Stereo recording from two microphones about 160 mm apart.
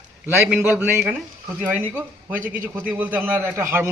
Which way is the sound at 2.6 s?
10° right (ahead or behind).